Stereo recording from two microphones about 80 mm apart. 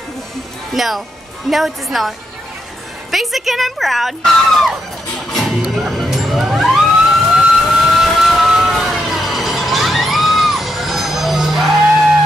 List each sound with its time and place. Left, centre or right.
0.7 s a woman's voice: centre
5.3 s a sound: centre
5.6 s music: centre
7.3 s vehicle: centre